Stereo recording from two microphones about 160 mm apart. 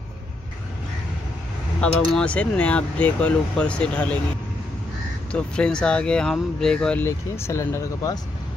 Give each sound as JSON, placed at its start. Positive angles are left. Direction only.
{"t": 1.8, "sound": "speech", "side_deg": 5}
{"t": 5.3, "sound": "speech", "side_deg": 5}
{"t": 7.1, "sound": "speech", "side_deg": 15}